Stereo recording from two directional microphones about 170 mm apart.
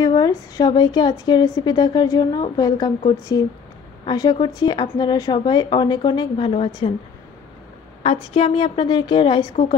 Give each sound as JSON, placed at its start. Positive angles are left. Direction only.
{"t": 0.0, "sound": "a woman's voice", "side_deg": 20}
{"t": 4.0, "sound": "a woman's voice", "side_deg": 25}
{"t": 8.0, "sound": "a woman's voice", "side_deg": 35}